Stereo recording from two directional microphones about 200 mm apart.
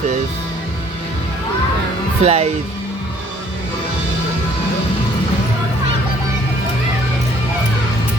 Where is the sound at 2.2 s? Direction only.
30° right (ahead or behind).